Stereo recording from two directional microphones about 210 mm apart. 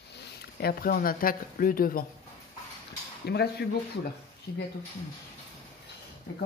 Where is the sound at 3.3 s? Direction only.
50° left (ahead or behind).